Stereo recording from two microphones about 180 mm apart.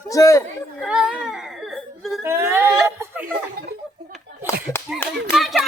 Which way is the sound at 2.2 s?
15° right (ahead or behind).